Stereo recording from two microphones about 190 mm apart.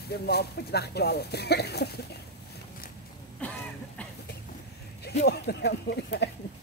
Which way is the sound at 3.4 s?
5° left (ahead or behind).